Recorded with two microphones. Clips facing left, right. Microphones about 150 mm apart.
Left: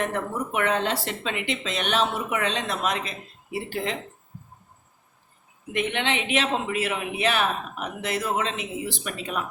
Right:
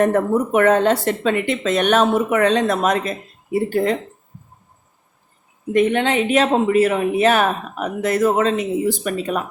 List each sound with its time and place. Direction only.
0.0 s speech: 45° right (ahead or behind)
5.7 s speech: 40° right (ahead or behind)